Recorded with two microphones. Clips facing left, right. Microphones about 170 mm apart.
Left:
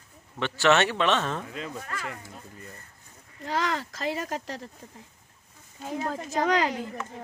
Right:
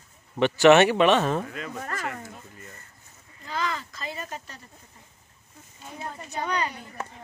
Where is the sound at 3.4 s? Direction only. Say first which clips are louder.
Left 2 dB; 75° left (ahead or behind).